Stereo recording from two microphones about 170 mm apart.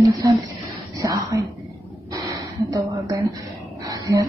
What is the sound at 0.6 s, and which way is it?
Whispering, 20° right (ahead or behind).